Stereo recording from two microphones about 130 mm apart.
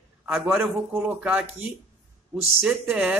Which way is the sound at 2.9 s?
5° right (ahead or behind).